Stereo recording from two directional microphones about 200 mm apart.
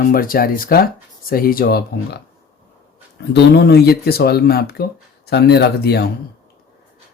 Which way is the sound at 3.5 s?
55° left (ahead or behind).